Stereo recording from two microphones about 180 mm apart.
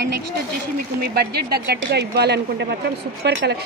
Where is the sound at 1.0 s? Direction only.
60° right (ahead or behind).